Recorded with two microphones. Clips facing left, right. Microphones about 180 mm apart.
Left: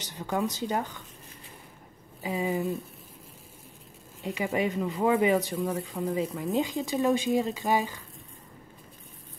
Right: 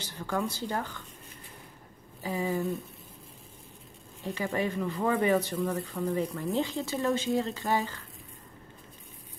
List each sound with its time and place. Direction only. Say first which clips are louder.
0.0 s speech: left 2 dB; 15° left (ahead or behind)
2.2 s speech: left 1 dB; 15° left (ahead or behind)
4.2 s speech: left 2 dB; 15° left (ahead or behind)